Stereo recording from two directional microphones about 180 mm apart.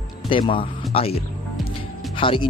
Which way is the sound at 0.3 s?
30° left (ahead or behind).